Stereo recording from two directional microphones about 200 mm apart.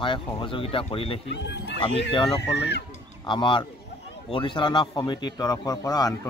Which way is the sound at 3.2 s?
25° left (ahead or behind).